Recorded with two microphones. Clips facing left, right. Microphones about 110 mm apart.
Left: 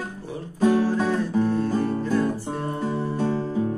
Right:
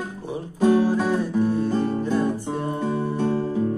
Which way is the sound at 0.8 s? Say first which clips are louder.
Right 1 dB; 15° right (ahead or behind).